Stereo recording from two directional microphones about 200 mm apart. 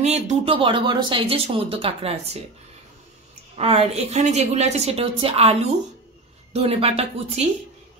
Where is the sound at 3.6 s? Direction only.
30° right (ahead or behind).